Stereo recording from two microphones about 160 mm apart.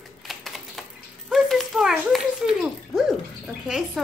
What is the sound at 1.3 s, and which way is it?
A child's voice, centre (ahead or behind).